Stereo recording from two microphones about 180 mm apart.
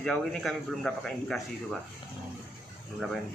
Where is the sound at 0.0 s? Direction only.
5° left (ahead or behind).